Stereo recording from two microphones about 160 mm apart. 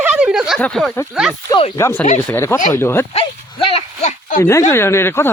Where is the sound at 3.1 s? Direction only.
35° left (ahead or behind); by 4.4 s 50° left (ahead or behind).